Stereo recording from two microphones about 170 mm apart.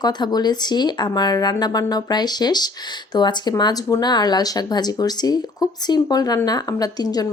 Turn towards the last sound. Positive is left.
turn(degrees=20)  # may be behind; listen again after turning